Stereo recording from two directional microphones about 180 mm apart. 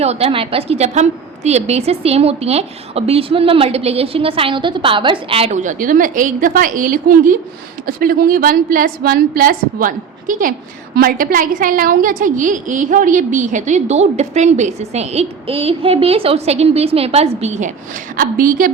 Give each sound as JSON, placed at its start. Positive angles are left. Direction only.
{"t": 0.0, "sound": "a woman's voice", "side_deg": -35}
{"t": 18.2, "sound": "a woman's voice", "side_deg": -50}